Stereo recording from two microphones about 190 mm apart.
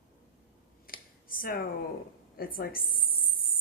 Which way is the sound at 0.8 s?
50° left (ahead or behind).